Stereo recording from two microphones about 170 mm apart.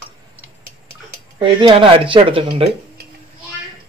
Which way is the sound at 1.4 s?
30° right (ahead or behind).